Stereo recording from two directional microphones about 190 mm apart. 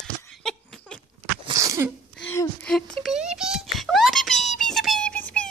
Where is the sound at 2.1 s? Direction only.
5° left (ahead or behind).